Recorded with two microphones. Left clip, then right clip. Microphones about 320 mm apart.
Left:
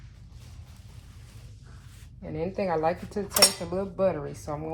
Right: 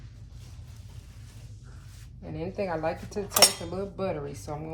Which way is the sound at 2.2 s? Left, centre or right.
Left.